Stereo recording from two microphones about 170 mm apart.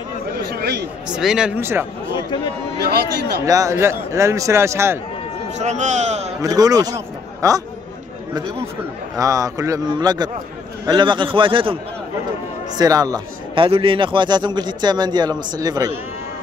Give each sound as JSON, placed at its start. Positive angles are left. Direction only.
{"t": 0.6, "sound": "a sound", "side_deg": -75}
{"t": 1.0, "sound": "speech", "side_deg": -5}
{"t": 2.1, "sound": "speech", "side_deg": 25}
{"t": 2.8, "sound": "speech", "side_deg": -70}
{"t": 3.4, "sound": "a man's voice", "side_deg": -20}
{"t": 5.6, "sound": "speech", "side_deg": -45}
{"t": 6.4, "sound": "speech", "side_deg": -20}
{"t": 9.1, "sound": "a man's voice", "side_deg": -20}